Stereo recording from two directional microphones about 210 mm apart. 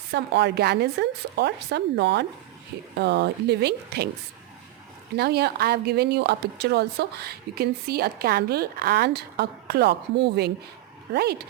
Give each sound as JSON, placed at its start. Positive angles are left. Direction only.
{"t": 0.1, "sound": "speech", "side_deg": -55}
{"t": 5.1, "sound": "speech", "side_deg": -50}